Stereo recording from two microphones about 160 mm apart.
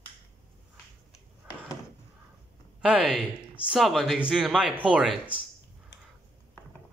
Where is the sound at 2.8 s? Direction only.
5° right (ahead or behind).